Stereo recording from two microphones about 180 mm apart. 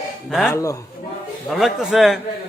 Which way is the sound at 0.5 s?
15° left (ahead or behind).